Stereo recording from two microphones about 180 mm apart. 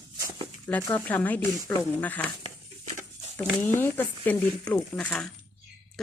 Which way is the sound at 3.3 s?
10° left (ahead or behind).